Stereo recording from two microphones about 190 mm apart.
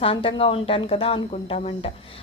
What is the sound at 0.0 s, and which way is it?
A woman's voice, 30° left (ahead or behind).